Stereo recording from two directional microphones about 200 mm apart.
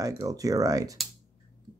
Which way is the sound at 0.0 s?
20° right (ahead or behind).